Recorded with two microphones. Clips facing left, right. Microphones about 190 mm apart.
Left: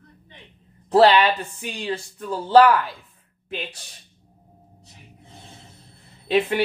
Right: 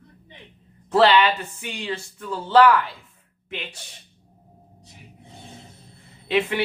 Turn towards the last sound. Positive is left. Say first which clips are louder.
# left 2 dB
turn(degrees=35)  # may be behind; listen again after turning